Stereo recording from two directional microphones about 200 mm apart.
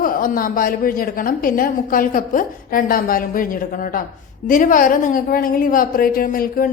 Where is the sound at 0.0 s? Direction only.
45° left (ahead or behind).